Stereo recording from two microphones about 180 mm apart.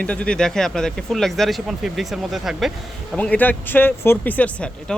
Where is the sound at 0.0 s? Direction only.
5° left (ahead or behind).